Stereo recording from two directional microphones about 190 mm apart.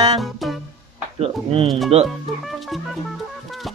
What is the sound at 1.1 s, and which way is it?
Speech, 30° right (ahead or behind).